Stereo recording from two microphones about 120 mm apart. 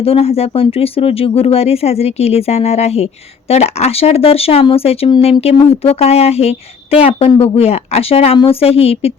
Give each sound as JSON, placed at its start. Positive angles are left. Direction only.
{"t": 0.0, "sound": "speech", "side_deg": 55}